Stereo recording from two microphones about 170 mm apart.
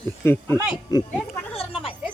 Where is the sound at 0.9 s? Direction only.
25° left (ahead or behind).